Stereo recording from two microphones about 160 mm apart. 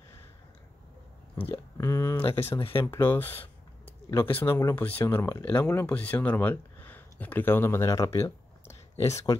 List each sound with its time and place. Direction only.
1.3 s speech: 15° left (ahead or behind)
2.6 s speech: 35° left (ahead or behind)
2.9 s speech: 15° left (ahead or behind)